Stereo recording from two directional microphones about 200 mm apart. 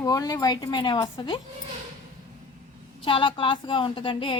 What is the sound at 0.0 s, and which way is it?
Speech, 20° left (ahead or behind).